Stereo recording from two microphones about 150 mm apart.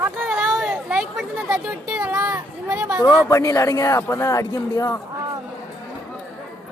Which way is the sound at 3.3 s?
20° left (ahead or behind).